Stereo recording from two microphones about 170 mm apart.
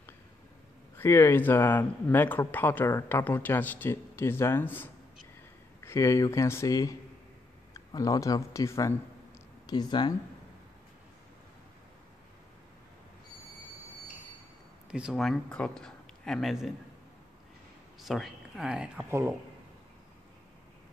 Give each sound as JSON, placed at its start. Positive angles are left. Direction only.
{"t": 0.9, "sound": "speech", "side_deg": 15}
{"t": 5.9, "sound": "speech", "side_deg": 20}
{"t": 14.9, "sound": "speech", "side_deg": -5}
{"t": 18.0, "sound": "speech", "side_deg": 0}